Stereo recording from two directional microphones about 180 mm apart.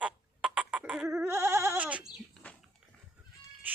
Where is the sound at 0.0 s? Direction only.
5° right (ahead or behind).